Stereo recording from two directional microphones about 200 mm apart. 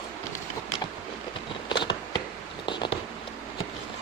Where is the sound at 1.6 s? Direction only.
25° left (ahead or behind).